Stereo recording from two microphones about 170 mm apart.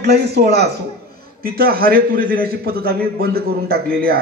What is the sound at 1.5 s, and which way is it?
A man's voice, 60° right (ahead or behind).